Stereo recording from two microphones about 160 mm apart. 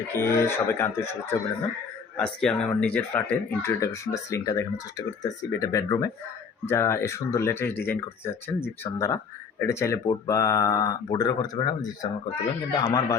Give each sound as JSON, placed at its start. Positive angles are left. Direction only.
{"t": 0.2, "sound": "speech", "side_deg": 15}